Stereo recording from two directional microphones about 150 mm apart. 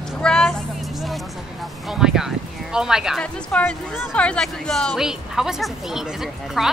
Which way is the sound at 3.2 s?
10° left (ahead or behind).